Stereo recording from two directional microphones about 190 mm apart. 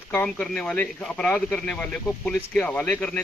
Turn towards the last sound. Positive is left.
turn(degrees=5)  # may be behind; listen again after turning